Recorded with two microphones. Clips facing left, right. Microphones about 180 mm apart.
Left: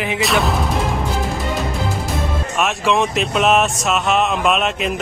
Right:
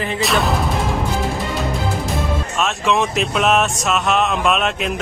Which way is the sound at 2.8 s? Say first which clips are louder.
Even; centre (ahead or behind).